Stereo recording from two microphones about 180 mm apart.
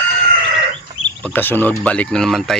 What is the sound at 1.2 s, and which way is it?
Speech, 10° left (ahead or behind).